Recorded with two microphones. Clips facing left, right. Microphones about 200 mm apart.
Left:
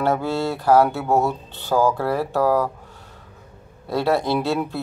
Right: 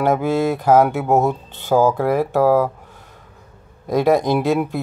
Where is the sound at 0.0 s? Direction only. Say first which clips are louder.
Right 4 dB; 15° right (ahead or behind).